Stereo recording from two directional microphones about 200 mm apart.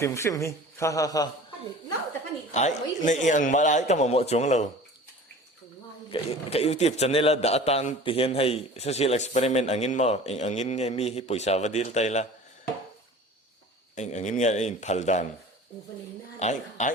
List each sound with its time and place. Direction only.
0.0 s a man's voice: 15° left (ahead or behind)
2.5 s a man's voice: 35° left (ahead or behind)
6.1 s a man's voice: 30° left (ahead or behind)
13.9 s a man's voice: 35° left (ahead or behind)
16.4 s a man's voice: 35° left (ahead or behind)